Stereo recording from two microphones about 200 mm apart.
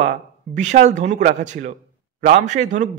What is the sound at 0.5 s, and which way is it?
A man's voice, 35° right (ahead or behind).